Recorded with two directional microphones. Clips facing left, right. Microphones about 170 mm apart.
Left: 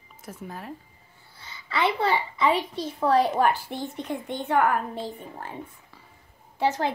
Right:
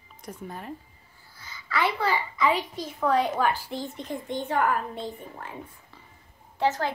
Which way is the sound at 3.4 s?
60° left (ahead or behind).